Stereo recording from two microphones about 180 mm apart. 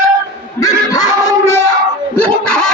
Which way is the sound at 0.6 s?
10° left (ahead or behind).